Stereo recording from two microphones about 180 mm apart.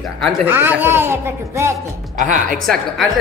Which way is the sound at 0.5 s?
10° right (ahead or behind).